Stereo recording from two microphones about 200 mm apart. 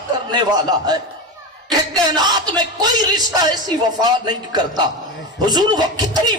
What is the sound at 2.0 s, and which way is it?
Speech, 20° right (ahead or behind).